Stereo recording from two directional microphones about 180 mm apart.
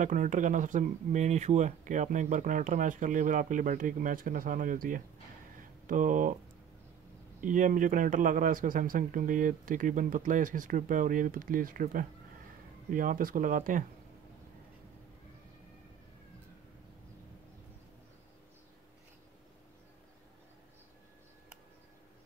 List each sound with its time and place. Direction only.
0.0 s speech: 45° right (ahead or behind)
7.4 s speech: 45° right (ahead or behind)